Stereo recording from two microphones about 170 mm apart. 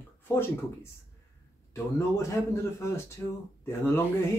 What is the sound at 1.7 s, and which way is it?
Speech, 15° left (ahead or behind).